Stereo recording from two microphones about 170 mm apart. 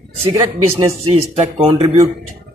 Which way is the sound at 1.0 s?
35° right (ahead or behind).